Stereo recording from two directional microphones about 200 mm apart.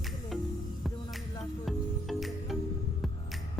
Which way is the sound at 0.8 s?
Centre (ahead or behind).